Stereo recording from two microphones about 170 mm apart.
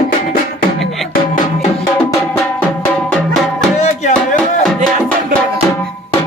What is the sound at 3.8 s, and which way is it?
Music, 45° left (ahead or behind).